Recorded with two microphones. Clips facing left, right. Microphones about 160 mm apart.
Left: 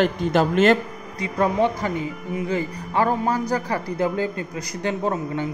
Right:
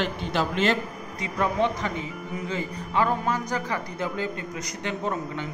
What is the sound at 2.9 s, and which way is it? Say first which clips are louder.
A man's voice: left 4 dB; 40° left (ahead or behind).